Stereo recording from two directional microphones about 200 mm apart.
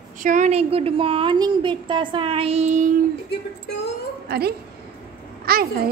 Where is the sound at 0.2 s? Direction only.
40° right (ahead or behind).